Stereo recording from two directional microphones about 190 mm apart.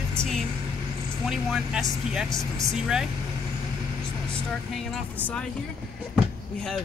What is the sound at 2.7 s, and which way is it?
Speech, centre (ahead or behind).